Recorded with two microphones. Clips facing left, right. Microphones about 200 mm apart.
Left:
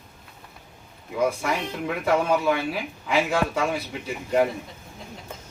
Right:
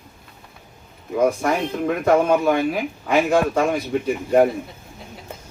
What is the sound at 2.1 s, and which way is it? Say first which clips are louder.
Speech: right 5 dB; 50° right (ahead or behind).